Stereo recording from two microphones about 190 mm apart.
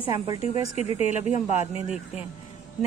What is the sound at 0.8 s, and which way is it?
A woman's voice, 35° left (ahead or behind).